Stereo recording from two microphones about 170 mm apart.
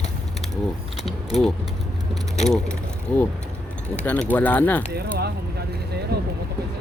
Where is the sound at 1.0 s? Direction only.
Centre (ahead or behind).